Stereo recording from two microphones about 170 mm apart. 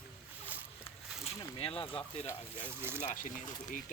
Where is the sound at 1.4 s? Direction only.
30° left (ahead or behind).